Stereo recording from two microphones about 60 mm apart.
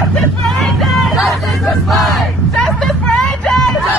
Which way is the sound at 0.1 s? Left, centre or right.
Centre.